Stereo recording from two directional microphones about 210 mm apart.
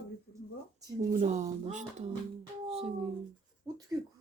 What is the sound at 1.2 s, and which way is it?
Speech, 35° right (ahead or behind).